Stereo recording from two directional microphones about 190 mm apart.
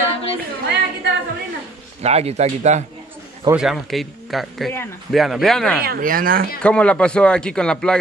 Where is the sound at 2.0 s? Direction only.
35° right (ahead or behind).